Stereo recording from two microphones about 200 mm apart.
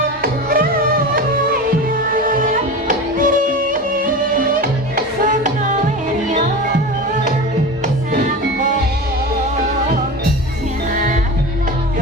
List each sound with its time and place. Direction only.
0.2 s music: 45° right (ahead or behind)
2.8 s music: 40° right (ahead or behind)
10.9 s music: 45° right (ahead or behind)